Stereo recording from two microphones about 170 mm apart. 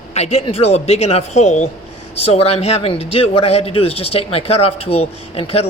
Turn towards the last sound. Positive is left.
turn(degrees=35)  # may be behind; listen again after turning